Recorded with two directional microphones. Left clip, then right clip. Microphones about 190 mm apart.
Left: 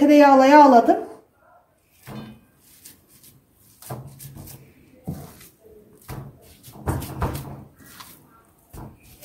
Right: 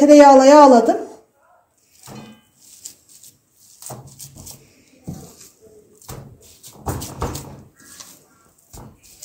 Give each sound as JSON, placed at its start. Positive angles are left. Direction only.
{"t": 0.0, "sound": "speech", "side_deg": -45}